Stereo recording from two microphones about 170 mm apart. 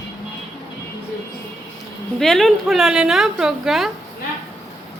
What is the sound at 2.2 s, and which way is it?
A woman's voice, centre (ahead or behind).